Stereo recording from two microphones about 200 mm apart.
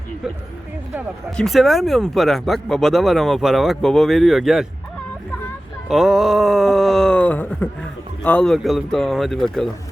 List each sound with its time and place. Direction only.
1.4 s speech: centre (ahead or behind)
5.9 s speech: centre (ahead or behind)